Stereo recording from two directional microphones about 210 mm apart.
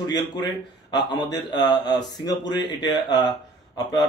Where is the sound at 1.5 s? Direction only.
20° left (ahead or behind).